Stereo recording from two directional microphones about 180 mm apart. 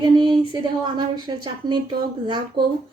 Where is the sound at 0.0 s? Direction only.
25° right (ahead or behind).